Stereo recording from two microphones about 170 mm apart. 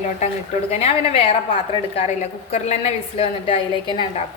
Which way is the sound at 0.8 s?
35° left (ahead or behind).